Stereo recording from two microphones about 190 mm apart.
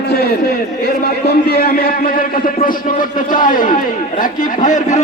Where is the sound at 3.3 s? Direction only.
45° left (ahead or behind).